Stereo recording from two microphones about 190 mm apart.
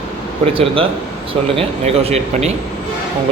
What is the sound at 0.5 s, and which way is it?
A man's voice, 30° right (ahead or behind).